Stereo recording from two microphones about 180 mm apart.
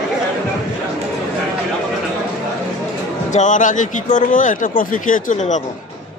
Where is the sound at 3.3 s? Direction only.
45° left (ahead or behind).